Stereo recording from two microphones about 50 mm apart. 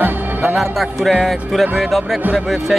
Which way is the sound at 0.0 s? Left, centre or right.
Right.